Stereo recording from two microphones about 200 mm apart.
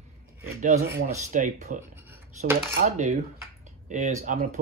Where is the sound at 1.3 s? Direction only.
40° right (ahead or behind).